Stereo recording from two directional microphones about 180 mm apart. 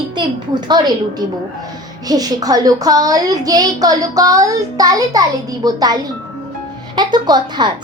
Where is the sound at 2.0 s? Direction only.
20° right (ahead or behind).